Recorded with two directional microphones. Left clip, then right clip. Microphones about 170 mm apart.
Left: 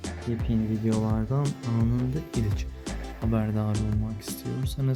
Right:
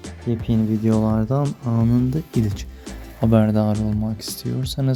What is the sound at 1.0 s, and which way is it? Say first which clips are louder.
Speech: right 8 dB; 25° right (ahead or behind).